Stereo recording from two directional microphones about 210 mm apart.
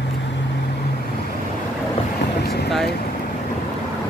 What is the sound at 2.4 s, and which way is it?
Boat, 50° left (ahead or behind).